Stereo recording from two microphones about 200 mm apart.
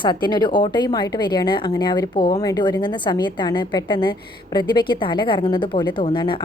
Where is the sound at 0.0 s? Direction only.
20° left (ahead or behind).